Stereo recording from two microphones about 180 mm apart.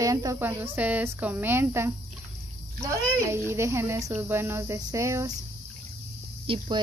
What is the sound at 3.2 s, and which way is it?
A woman's voice, 15° right (ahead or behind).